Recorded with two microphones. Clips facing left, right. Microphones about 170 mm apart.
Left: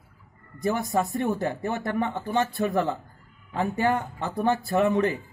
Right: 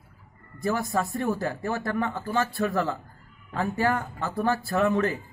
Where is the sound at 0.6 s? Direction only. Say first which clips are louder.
Left 1 dB; 20° left (ahead or behind).